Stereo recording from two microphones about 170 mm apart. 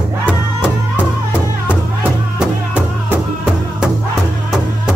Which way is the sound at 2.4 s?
10° right (ahead or behind).